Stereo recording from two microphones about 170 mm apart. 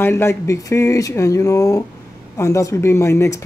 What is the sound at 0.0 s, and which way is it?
A woman's voice, 15° left (ahead or behind).